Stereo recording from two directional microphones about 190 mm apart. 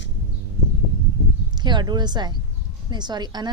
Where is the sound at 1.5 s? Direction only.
25° right (ahead or behind).